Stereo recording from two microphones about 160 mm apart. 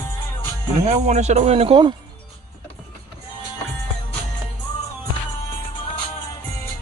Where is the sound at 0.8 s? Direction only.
45° right (ahead or behind).